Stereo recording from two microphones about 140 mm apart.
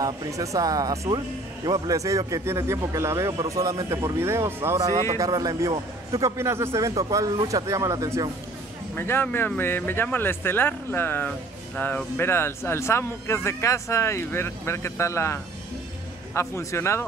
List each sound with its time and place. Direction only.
0.0 s speech: 25° right (ahead or behind)
8.9 s speech: 15° left (ahead or behind)